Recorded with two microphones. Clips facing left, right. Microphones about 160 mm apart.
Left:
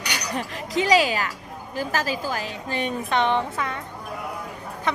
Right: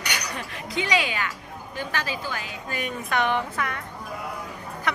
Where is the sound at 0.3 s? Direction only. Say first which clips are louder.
Left 5 dB; 35° left (ahead or behind).